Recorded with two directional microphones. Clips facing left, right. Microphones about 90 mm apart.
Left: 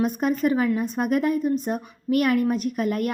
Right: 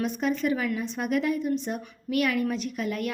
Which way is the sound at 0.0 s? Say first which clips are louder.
Left 4 dB; 45° left (ahead or behind).